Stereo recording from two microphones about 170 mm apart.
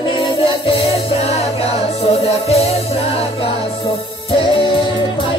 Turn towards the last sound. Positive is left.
turn(degrees=30)  # may be behind; listen again after turning